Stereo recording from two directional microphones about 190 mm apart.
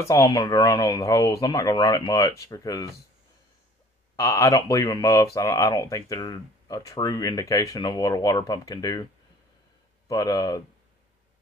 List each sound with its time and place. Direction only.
0.0 s speech: 15° left (ahead or behind)
4.2 s speech: 15° left (ahead or behind)
10.0 s speech: 20° left (ahead or behind)